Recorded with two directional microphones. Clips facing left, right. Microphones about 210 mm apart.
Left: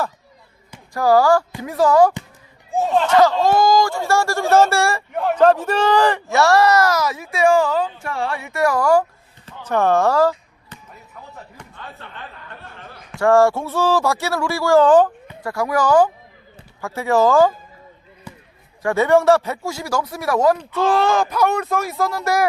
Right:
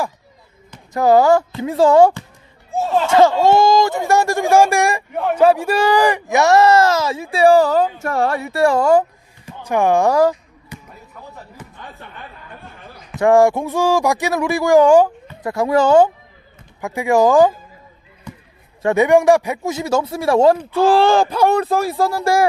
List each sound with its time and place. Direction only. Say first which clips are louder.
0.9 s speech: right 2 dB; 20° right (ahead or behind)
5.1 s speech: even; 5° right (ahead or behind); by 9.0 s 20° right (ahead or behind)
9.5 s basketball bounce: right 2 dB; 10° right (ahead or behind)
11.5 s a sound: right 1 dB; 15° right (ahead or behind)
13.1 s speech: right 2 dB; 15° right (ahead or behind)
15.5 s speech: right 3 dB; 25° right (ahead or behind)
16.8 s speech: right 2 dB; 15° right (ahead or behind)
18.3 s basketball bounce: right 3 dB; 5° left (ahead or behind)
18.8 s speech: right 2 dB; 20° right (ahead or behind)